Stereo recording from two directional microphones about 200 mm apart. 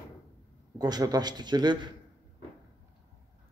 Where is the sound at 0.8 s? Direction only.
20° right (ahead or behind).